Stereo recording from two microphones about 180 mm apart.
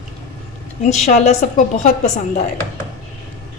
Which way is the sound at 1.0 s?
40° left (ahead or behind).